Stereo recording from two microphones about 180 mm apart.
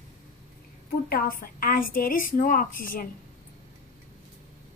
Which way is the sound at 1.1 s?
55° left (ahead or behind).